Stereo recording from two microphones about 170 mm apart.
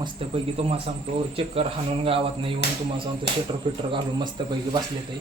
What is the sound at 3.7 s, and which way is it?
Speech, 30° right (ahead or behind).